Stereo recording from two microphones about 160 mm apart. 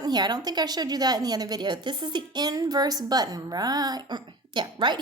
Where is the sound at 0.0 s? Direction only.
25° right (ahead or behind).